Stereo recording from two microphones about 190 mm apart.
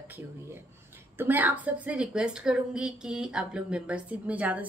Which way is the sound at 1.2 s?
10° right (ahead or behind).